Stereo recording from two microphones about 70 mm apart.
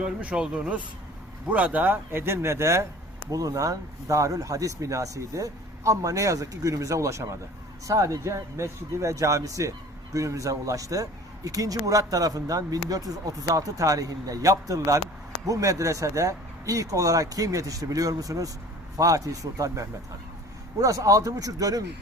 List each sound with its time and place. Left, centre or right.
0.0 s speech: centre; by 2.8 s right
3.2 s speech: right